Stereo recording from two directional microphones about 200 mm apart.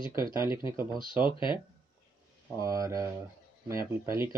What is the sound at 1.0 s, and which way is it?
Speech, 25° left (ahead or behind).